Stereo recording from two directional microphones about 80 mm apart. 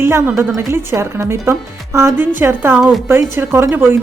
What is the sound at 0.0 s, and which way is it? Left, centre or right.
A woman's voice, right.